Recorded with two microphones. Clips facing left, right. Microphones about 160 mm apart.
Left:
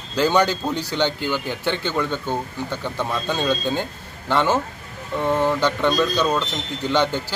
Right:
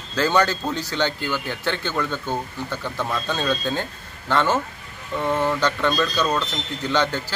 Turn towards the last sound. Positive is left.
turn(degrees=15)  # may be behind; listen again after turning